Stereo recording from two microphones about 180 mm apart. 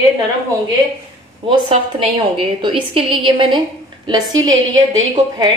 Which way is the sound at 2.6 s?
30° right (ahead or behind).